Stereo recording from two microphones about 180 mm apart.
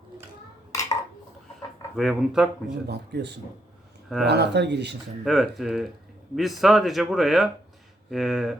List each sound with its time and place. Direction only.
0.7 s dishes: 15° left (ahead or behind)
2.0 s speech: centre (ahead or behind)
2.8 s speech: 65° right (ahead or behind)
5.2 s speech: centre (ahead or behind)